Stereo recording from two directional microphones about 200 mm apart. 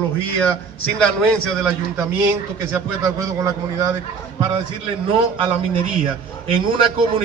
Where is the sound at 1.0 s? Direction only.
5° left (ahead or behind).